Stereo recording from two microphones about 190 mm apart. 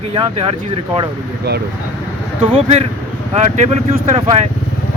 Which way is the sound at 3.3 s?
35° right (ahead or behind).